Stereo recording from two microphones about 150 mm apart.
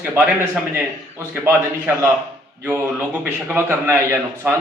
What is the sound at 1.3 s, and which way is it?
Speech, 15° right (ahead or behind).